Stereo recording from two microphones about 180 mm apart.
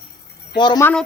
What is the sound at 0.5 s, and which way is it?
Speech, 25° left (ahead or behind).